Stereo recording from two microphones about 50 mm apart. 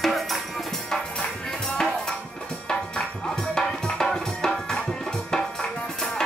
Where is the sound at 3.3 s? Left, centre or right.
Centre.